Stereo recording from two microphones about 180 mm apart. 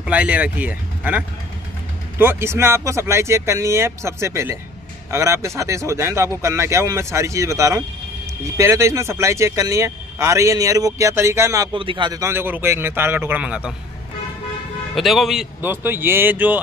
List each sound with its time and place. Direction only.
0.0 s speech: 10° right (ahead or behind)
15.0 s a man's voice: centre (ahead or behind)
15.6 s speech: 10° right (ahead or behind)